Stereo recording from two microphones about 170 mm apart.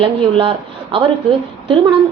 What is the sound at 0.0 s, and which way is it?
Speech, 30° right (ahead or behind).